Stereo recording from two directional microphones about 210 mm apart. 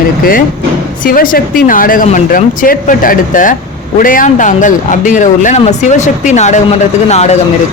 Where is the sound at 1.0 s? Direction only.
40° left (ahead or behind).